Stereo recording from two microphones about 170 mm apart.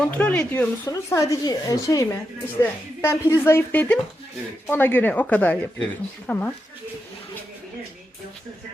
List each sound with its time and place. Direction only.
0.0 s speech: 5° left (ahead or behind)
0.9 s speech: 20° left (ahead or behind)